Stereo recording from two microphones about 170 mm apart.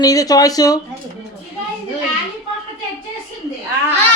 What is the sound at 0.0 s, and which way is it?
Speech, 20° left (ahead or behind).